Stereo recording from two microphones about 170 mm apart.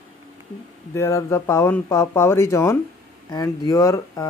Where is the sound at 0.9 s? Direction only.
15° left (ahead or behind).